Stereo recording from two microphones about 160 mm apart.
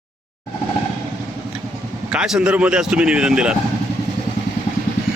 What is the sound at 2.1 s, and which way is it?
Speech, 5° right (ahead or behind).